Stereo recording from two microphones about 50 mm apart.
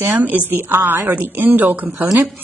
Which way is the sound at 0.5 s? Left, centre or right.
Right.